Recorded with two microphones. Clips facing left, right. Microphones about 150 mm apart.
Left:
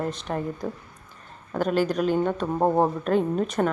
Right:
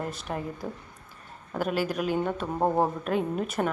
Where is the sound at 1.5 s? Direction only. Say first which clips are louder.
Left 5 dB; 5° right (ahead or behind).